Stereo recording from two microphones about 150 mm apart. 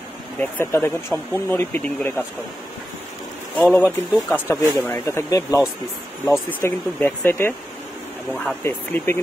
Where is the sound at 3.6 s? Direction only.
10° left (ahead or behind).